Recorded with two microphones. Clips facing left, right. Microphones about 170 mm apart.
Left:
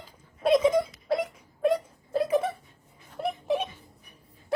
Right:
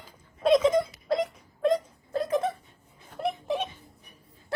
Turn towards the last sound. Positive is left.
turn(degrees=5)  # may be behind; listen again after turning